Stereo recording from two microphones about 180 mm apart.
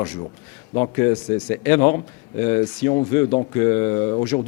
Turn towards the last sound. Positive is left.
turn(degrees=20)  # may be behind; listen again after turning